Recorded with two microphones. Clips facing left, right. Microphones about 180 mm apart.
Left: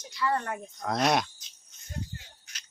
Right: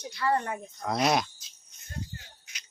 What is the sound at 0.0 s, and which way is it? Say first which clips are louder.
Speech: left 2 dB; 60° right (ahead or behind).